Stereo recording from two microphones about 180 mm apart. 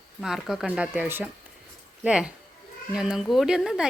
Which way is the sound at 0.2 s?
Centre (ahead or behind).